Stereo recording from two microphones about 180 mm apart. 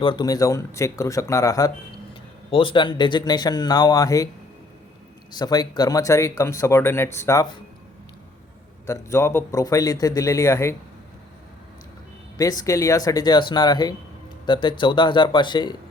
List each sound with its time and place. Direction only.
0.0 s speech: 25° left (ahead or behind)
5.3 s speech: 20° left (ahead or behind)
8.9 s speech: 15° left (ahead or behind)
12.4 s speech: 20° left (ahead or behind)